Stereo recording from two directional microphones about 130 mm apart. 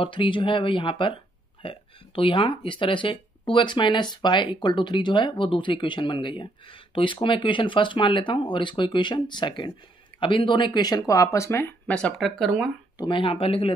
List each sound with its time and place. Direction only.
0.0 s speech: 40° left (ahead or behind); by 11.7 s 20° left (ahead or behind)
11.9 s speech: 5° left (ahead or behind)
12.9 s speech: 40° left (ahead or behind)